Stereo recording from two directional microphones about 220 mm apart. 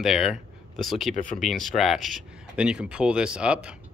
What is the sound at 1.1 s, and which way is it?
Speech, 35° left (ahead or behind).